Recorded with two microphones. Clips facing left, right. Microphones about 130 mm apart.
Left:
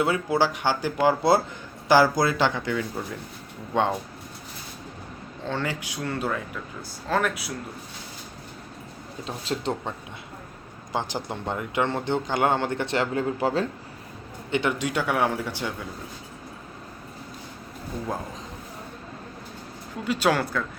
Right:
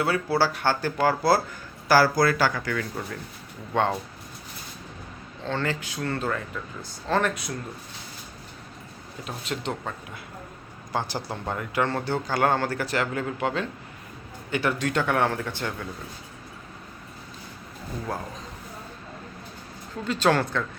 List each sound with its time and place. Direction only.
0.0 s a man's voice: 20° left (ahead or behind)
5.5 s speech: 10° left (ahead or behind)
9.2 s speech: 30° left (ahead or behind)
10.9 s a man's voice: 20° left (ahead or behind); by 13.7 s 35° left (ahead or behind)
14.5 s speech: 20° left (ahead or behind)
20.1 s speech: 10° left (ahead or behind)